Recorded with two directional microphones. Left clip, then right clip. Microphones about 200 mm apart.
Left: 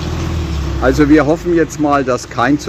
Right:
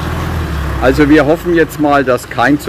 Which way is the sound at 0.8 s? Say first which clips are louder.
Right 2 dB; centre (ahead or behind).